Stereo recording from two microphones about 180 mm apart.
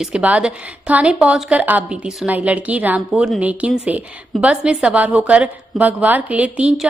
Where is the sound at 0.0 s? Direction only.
5° right (ahead or behind).